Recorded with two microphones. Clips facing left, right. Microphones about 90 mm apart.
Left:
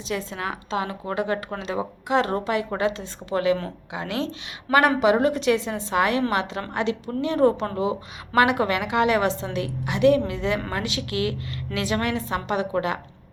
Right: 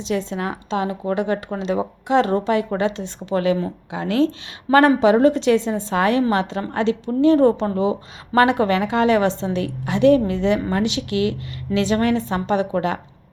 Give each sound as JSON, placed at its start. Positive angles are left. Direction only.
{"t": 0.1, "sound": "a woman's voice", "side_deg": -30}